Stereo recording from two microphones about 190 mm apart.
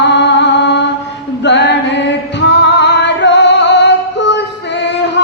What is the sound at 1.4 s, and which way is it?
Music, 65° left (ahead or behind).